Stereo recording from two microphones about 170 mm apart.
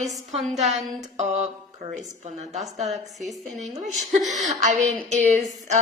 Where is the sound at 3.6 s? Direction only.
45° right (ahead or behind).